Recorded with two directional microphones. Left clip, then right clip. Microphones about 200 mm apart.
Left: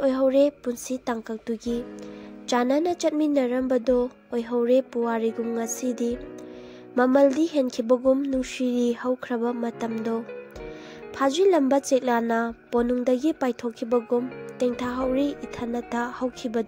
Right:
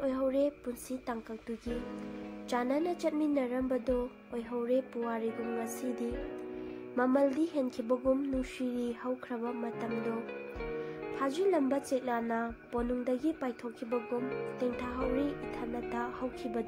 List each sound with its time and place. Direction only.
0.0 s a woman's voice: 40° left (ahead or behind)
2.5 s a woman's voice: 40° left (ahead or behind)
11.1 s a woman's voice: 40° left (ahead or behind)